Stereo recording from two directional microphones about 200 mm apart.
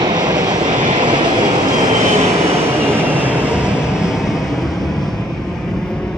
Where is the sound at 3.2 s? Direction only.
5° right (ahead or behind).